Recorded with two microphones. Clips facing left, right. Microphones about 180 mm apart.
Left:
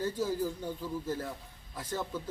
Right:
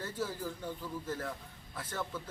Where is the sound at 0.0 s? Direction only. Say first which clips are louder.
Left 6 dB; 15° left (ahead or behind).